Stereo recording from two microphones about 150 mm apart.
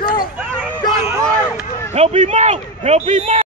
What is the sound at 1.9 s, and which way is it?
A man's voice, 45° right (ahead or behind).